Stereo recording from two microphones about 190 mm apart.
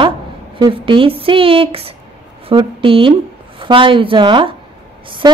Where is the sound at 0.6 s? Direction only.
25° right (ahead or behind).